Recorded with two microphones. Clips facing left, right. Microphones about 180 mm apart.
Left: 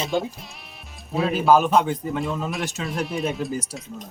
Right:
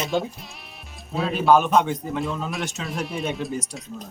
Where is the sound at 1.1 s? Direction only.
Centre (ahead or behind).